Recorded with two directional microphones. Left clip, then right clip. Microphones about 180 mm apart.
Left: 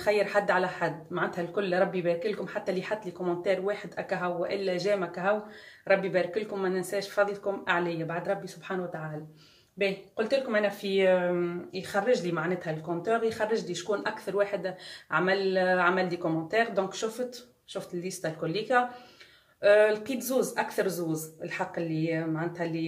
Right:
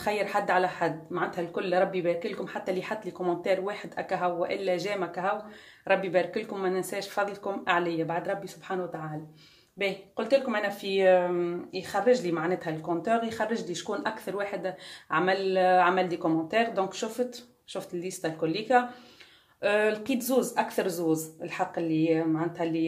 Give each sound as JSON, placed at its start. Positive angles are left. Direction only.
{"t": 0.0, "sound": "speech", "side_deg": -40}
{"t": 9.8, "sound": "speech", "side_deg": -35}